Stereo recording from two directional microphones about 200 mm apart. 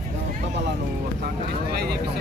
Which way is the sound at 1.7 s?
55° right (ahead or behind).